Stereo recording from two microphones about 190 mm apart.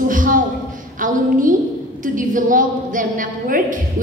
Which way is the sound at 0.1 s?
45° right (ahead or behind).